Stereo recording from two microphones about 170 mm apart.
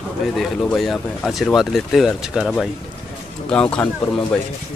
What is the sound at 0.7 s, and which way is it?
Speech, centre (ahead or behind).